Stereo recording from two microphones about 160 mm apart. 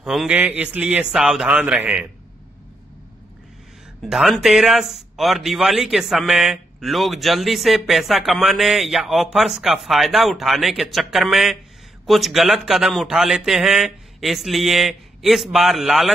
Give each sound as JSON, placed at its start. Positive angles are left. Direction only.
{"t": 0.0, "sound": "a man's voice", "side_deg": 0}
{"t": 4.0, "sound": "a man's voice", "side_deg": 0}